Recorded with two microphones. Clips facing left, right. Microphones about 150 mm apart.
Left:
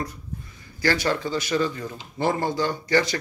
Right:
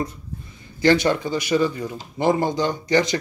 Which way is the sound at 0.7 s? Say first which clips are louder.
Right 6 dB; 20° right (ahead or behind).